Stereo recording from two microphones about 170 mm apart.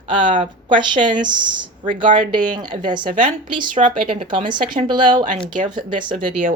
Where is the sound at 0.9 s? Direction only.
50° right (ahead or behind).